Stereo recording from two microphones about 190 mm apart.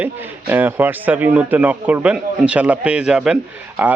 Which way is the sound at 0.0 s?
10° right (ahead or behind).